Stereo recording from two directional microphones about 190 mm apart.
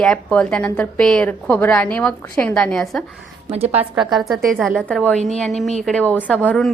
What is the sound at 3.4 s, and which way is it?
Speech, 30° right (ahead or behind).